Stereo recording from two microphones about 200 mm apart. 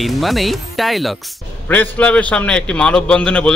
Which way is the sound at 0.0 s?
Centre (ahead or behind).